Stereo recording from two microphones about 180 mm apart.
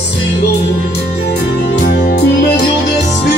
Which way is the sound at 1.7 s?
60° left (ahead or behind).